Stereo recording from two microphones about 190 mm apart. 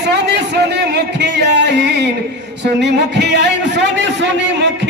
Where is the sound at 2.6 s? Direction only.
65° right (ahead or behind).